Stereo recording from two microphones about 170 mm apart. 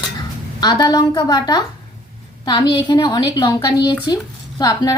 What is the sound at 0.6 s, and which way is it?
A woman's voice, 25° left (ahead or behind).